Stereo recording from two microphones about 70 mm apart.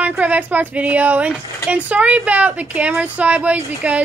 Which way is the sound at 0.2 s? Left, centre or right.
Right.